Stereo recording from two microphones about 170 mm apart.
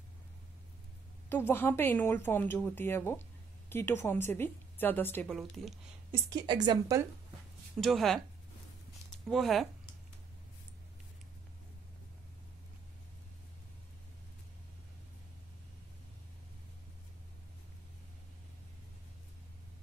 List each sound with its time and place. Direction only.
1.3 s a woman's voice: 10° left (ahead or behind)
6.1 s a woman's voice: 25° right (ahead or behind)
7.8 s speech: centre (ahead or behind)
9.3 s speech: centre (ahead or behind)